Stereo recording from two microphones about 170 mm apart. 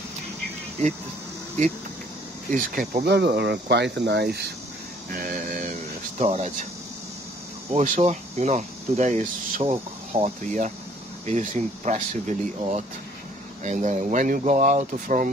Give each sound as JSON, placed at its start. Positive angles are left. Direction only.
{"t": 2.5, "sound": "speech", "side_deg": -55}
{"t": 5.1, "sound": "speech", "side_deg": -55}
{"t": 6.1, "sound": "speech", "side_deg": -40}
{"t": 7.7, "sound": "speech", "side_deg": -45}
{"t": 9.6, "sound": "speech", "side_deg": -35}
{"t": 10.4, "sound": "speech", "side_deg": -50}